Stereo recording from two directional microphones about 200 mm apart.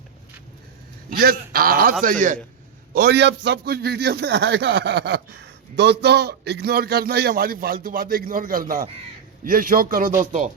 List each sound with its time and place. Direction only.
1.1 s a man's voice: 50° right (ahead or behind)
2.9 s a man's voice: 55° right (ahead or behind)